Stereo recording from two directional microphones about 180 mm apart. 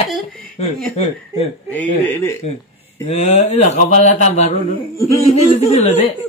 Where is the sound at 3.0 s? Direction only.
35° left (ahead or behind).